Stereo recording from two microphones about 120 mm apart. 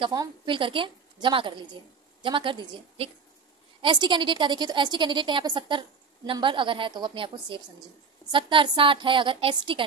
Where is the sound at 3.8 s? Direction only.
40° right (ahead or behind).